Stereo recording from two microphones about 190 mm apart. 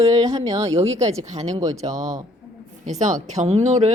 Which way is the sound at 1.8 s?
40° right (ahead or behind).